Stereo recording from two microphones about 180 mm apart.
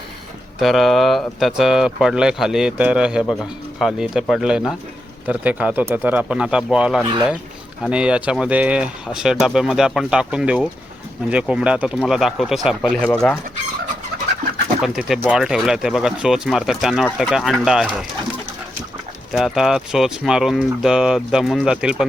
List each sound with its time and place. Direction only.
0.6 s speech: centre (ahead or behind)
7.0 s speech: 25° right (ahead or behind)
7.9 s speech: 5° right (ahead or behind)
14.8 s speech: 5° right (ahead or behind)
19.3 s speech: centre (ahead or behind)